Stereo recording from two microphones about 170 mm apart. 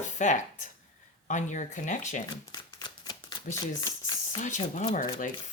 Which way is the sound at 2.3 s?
25° left (ahead or behind).